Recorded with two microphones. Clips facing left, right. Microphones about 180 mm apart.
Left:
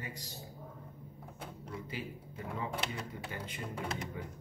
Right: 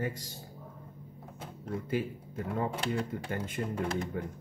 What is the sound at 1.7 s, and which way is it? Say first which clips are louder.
Speech: right 10 dB; 50° right (ahead or behind).